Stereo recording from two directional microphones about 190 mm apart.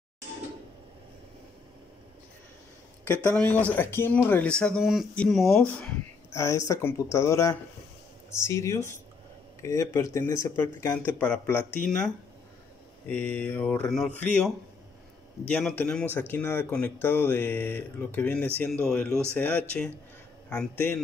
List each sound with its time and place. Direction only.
3.1 s speech: 10° left (ahead or behind)
6.3 s speech: 15° left (ahead or behind)
13.1 s speech: 10° left (ahead or behind)